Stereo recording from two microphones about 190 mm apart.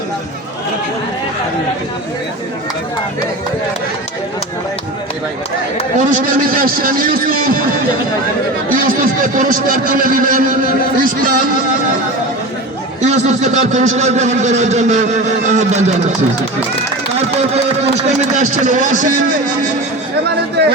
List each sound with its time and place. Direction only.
6.0 s speech: 45° right (ahead or behind)
8.7 s speech: 45° right (ahead or behind)
13.0 s speech: 35° right (ahead or behind)
17.2 s speech: 35° right (ahead or behind)